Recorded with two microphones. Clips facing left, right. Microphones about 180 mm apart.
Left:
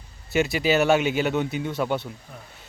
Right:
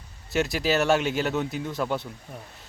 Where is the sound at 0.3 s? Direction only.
Centre (ahead or behind).